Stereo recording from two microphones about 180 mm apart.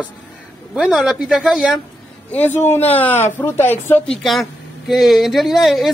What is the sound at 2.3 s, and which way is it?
Speech, 10° left (ahead or behind).